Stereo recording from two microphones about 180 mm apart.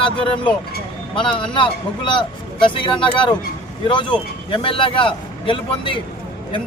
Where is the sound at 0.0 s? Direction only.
30° left (ahead or behind).